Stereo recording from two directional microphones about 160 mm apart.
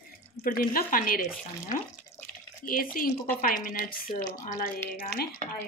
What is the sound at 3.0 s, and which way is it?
Speech, 65° left (ahead or behind).